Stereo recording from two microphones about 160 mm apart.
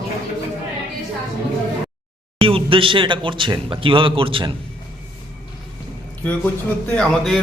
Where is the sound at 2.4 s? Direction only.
35° right (ahead or behind).